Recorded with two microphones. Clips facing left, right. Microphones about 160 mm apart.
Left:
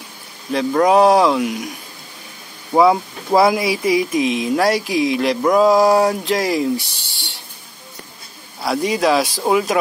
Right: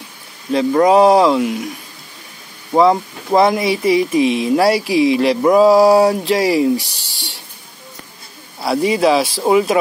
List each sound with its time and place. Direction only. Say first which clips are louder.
0.5 s speech: right 3 dB; centre (ahead or behind)
2.7 s speech: right 1 dB; centre (ahead or behind)
6.8 s speech: right 2 dB; 40° right (ahead or behind)
8.5 s speech: right 3 dB; 5° right (ahead or behind)